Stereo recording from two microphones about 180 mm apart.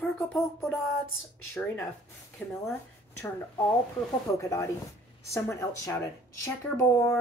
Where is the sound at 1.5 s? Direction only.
10° left (ahead or behind).